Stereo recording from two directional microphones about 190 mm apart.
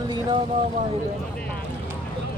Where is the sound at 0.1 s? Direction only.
25° right (ahead or behind).